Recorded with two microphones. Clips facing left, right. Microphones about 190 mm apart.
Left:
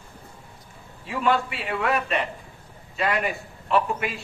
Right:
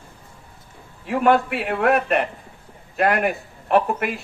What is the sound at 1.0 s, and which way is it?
A man's voice, 60° right (ahead or behind).